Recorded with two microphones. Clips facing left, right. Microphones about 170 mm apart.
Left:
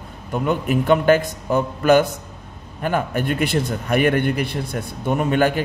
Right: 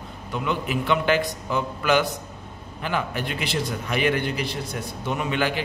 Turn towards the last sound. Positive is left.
turn(degrees=45)  # may be behind; listen again after turning